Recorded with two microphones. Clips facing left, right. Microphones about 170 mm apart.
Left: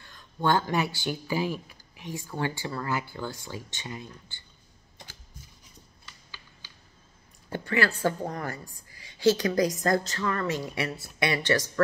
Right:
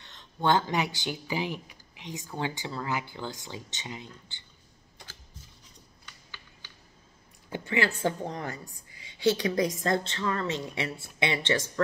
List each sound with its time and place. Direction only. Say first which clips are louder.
0.0 s speech: even; 25° right (ahead or behind)
7.5 s speech: left 2 dB; 20° right (ahead or behind)